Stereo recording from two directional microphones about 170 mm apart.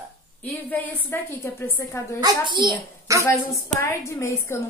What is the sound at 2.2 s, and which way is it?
A child's voice, 25° right (ahead or behind).